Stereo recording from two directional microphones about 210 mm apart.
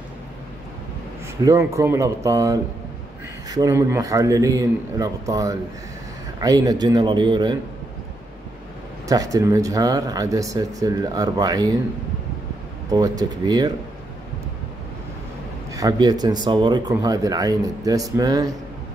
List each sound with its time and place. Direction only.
1.4 s a man's voice: 15° right (ahead or behind)
9.1 s speech: 15° right (ahead or behind)
12.9 s a man's voice: 20° right (ahead or behind)
15.7 s speech: 15° right (ahead or behind)